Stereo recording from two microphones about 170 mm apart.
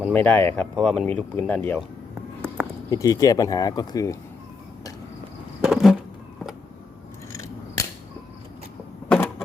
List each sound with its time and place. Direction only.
0.1 s speech: 10° left (ahead or behind)
2.9 s speech: 20° left (ahead or behind)
5.6 s a sound: centre (ahead or behind)
7.3 s scissors: 20° left (ahead or behind)
9.0 s power windows: 10° left (ahead or behind)